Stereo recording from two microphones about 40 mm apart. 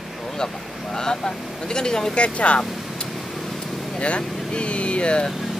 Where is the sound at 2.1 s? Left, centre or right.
Left.